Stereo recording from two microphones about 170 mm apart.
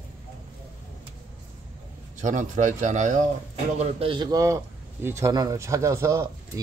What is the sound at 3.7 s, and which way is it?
A man's voice, 35° right (ahead or behind).